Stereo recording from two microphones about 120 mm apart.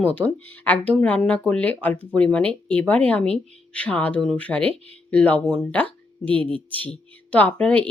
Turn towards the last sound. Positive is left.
turn(degrees=10)  # may be behind; listen again after turning